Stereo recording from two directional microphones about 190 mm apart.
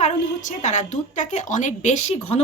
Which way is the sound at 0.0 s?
40° left (ahead or behind).